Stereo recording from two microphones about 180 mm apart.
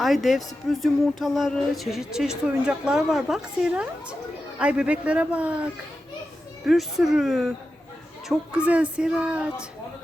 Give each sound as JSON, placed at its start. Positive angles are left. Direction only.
{"t": 0.0, "sound": "a man's voice", "side_deg": 0}
{"t": 6.7, "sound": "speech", "side_deg": 0}